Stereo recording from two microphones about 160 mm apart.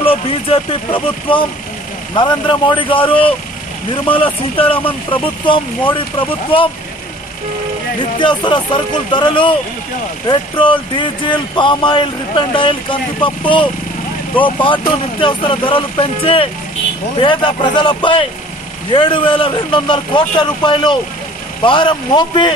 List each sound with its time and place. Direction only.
0.0 s speech: 35° left (ahead or behind)
8.2 s speech: 30° left (ahead or behind)